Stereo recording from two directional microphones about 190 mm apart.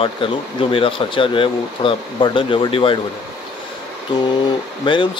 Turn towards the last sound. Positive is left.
turn(degrees=25)  # may be behind; listen again after turning